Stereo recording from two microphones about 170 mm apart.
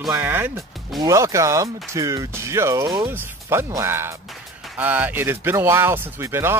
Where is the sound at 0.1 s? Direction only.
10° right (ahead or behind).